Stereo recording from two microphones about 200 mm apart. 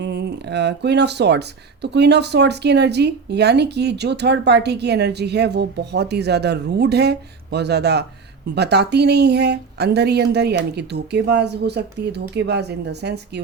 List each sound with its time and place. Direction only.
0.0 s speech: 55° right (ahead or behind)